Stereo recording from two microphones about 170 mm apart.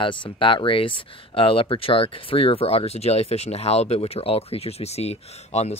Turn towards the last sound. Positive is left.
turn(degrees=40)  # may be behind; listen again after turning